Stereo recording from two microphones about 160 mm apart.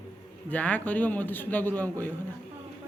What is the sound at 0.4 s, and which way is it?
A man's voice, 10° left (ahead or behind).